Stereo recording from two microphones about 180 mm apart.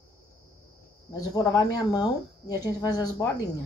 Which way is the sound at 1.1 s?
20° left (ahead or behind).